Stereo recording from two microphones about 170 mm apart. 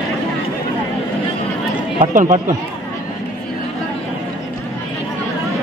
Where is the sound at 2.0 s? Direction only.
45° right (ahead or behind).